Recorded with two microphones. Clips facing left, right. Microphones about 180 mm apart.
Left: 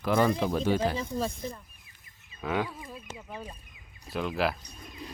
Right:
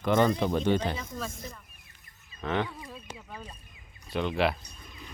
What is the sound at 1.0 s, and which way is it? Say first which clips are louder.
Speech: left 6 dB; 30° left (ahead or behind).